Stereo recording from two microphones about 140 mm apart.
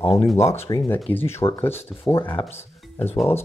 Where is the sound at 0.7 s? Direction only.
30° left (ahead or behind).